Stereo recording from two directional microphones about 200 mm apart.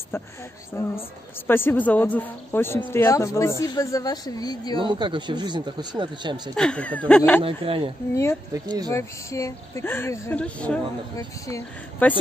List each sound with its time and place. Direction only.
0.1 s a woman's voice: 10° left (ahead or behind)
4.7 s speech: 25° right (ahead or behind)
6.5 s speech: 5° left (ahead or behind)
7.4 s speech: 25° right (ahead or behind)
8.1 s a woman's voice: 15° left (ahead or behind)
8.5 s speech: 20° right (ahead or behind)
8.9 s a woman's voice: 15° left (ahead or behind)